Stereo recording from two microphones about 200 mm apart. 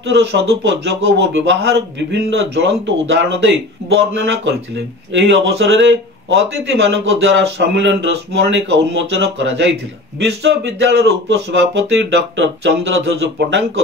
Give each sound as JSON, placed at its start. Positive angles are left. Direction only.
{"t": 0.1, "sound": "speech", "side_deg": -60}